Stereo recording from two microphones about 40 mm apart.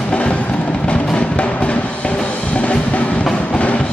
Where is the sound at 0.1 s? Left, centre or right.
Left.